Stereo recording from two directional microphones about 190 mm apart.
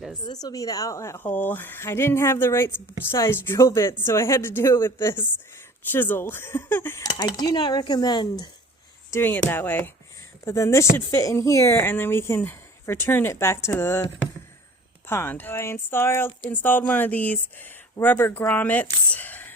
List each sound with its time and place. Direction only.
0.2 s a woman's voice: 20° left (ahead or behind)
19.1 s whispering: 10° left (ahead or behind)